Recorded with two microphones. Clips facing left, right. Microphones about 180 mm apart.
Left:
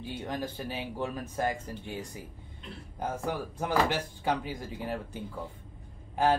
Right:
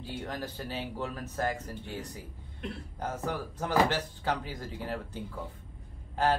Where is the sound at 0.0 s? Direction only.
15° left (ahead or behind).